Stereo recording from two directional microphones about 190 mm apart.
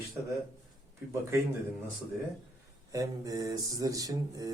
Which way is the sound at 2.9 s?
20° right (ahead or behind).